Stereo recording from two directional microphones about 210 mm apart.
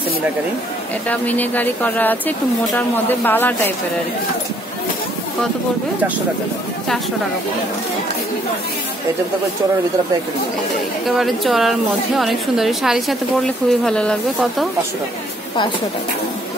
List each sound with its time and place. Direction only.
1.0 s speech: 5° left (ahead or behind)
11.1 s a woman's voice: centre (ahead or behind)